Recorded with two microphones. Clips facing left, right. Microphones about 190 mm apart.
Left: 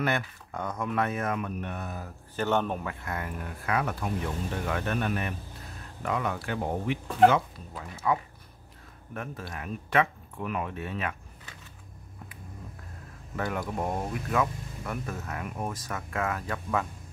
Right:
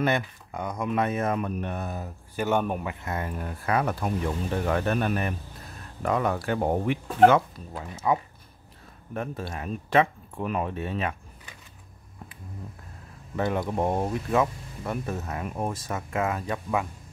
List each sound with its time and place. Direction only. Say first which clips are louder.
0.0 s speech: right 4 dB; 15° right (ahead or behind); by 2.0 s 30° right (ahead or behind)
2.0 s speech: right 1 dB; 10° right (ahead or behind); by 7.4 s 55° right (ahead or behind)
7.7 s speech: right 3 dB; 20° right (ahead or behind)
13.4 s speech: right 5 dB; 25° right (ahead or behind)